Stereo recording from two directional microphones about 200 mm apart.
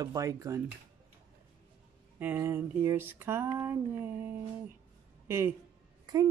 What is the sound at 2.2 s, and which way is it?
Speech, 10° right (ahead or behind).